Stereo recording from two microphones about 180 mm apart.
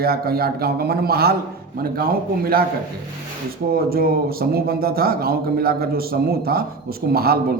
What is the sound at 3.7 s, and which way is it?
A man's voice, 55° right (ahead or behind).